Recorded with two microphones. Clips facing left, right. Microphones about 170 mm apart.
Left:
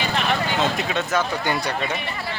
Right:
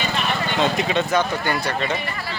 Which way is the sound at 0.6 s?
Centre (ahead or behind).